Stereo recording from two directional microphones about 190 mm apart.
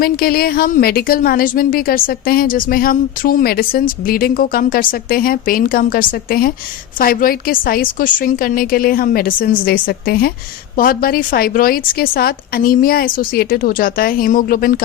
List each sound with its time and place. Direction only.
0.0 s a woman's voice: 50° left (ahead or behind)